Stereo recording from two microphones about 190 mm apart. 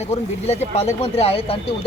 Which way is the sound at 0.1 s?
35° left (ahead or behind).